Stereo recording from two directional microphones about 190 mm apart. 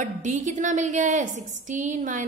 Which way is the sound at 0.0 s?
40° right (ahead or behind).